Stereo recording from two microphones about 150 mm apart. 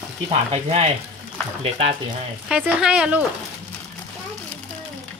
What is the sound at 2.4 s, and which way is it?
Speech, 10° right (ahead or behind).